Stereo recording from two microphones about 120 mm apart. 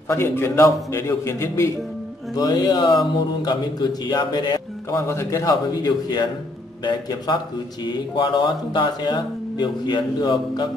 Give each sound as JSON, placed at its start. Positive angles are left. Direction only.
{"t": 0.1, "sound": "a man's voice", "side_deg": 20}
{"t": 4.9, "sound": "a man's voice", "side_deg": 25}